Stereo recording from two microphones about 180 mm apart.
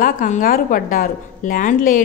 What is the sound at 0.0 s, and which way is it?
A woman's voice, 50° left (ahead or behind).